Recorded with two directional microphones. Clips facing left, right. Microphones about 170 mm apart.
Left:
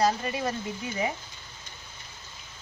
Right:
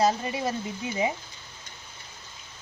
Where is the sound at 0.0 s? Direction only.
25° right (ahead or behind).